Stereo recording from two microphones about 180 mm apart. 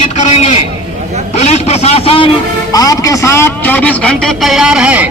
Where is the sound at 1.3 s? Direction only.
35° left (ahead or behind).